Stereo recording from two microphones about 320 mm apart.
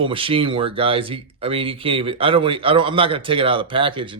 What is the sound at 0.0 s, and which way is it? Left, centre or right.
Speech, centre.